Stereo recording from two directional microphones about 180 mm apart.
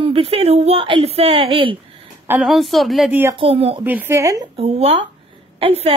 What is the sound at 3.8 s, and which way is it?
Speech, 10° right (ahead or behind).